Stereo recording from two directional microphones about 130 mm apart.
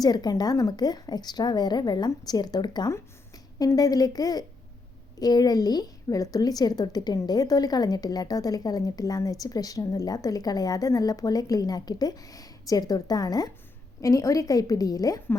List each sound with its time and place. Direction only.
0.0 s a woman's voice: 30° left (ahead or behind)